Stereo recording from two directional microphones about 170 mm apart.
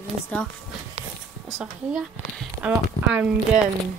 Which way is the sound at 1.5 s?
5° right (ahead or behind).